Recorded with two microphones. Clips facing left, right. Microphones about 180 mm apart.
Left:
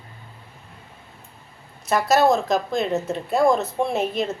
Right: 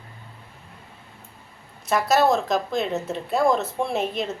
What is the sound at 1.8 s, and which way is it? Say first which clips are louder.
Speech: left 2 dB; centre (ahead or behind).